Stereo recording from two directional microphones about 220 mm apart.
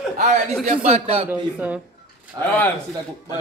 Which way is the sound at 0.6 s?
30° right (ahead or behind).